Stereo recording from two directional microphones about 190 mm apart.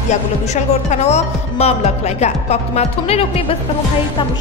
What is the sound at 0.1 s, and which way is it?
Speech, 35° left (ahead or behind).